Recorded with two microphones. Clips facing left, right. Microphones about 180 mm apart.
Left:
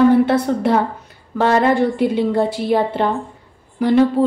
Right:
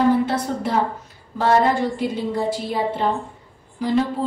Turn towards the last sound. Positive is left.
turn(degrees=65)  # may be behind; listen again after turning